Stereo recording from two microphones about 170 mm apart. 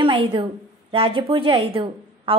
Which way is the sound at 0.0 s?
30° right (ahead or behind).